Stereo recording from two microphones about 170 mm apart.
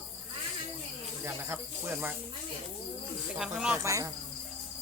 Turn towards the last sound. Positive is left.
turn(degrees=-20)  # may be behind; listen again after turning